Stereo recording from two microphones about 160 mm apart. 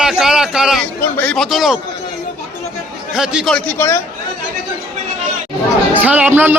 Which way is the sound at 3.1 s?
5° right (ahead or behind).